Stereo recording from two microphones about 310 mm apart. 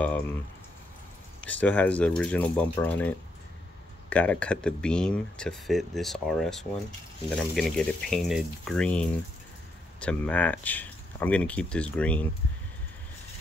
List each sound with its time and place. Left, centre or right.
0.0 s speech: centre
1.4 s speech: centre